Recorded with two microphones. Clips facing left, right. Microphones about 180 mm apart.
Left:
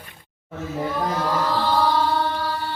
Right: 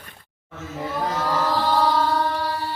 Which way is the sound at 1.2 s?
10° right (ahead or behind).